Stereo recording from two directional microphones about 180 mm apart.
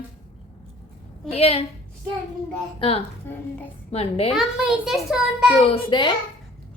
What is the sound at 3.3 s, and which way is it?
Speech, 10° left (ahead or behind).